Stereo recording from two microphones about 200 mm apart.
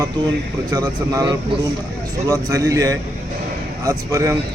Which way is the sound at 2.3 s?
15° right (ahead or behind).